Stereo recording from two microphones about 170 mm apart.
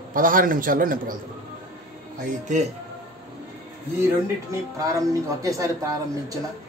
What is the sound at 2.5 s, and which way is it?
Speech, 45° right (ahead or behind).